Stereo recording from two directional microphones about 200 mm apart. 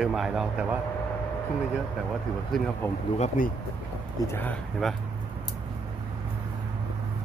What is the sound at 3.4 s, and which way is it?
Speech, 40° left (ahead or behind).